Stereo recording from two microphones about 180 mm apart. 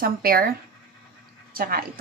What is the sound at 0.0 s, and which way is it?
A woman's voice, 55° right (ahead or behind).